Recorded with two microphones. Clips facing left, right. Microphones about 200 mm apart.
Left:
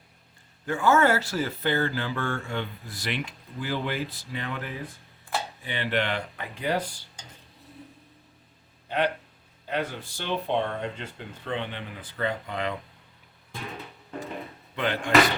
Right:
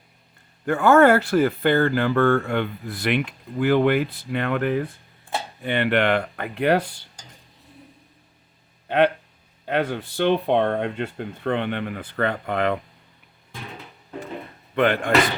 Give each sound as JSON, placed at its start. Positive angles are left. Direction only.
{"t": 0.6, "sound": "speech", "side_deg": -60}
{"t": 9.6, "sound": "speech", "side_deg": -60}
{"t": 14.8, "sound": "speech", "side_deg": -60}